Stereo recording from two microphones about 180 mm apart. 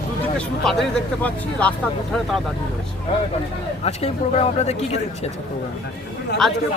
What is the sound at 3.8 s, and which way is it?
Speech, 35° left (ahead or behind).